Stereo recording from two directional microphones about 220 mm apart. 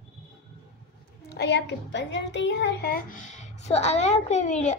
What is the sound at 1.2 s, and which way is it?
A child's voice, 45° left (ahead or behind).